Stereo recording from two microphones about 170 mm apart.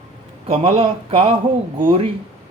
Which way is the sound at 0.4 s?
35° right (ahead or behind).